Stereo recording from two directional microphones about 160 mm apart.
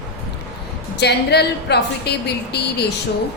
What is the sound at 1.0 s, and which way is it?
A woman's voice, 90° left.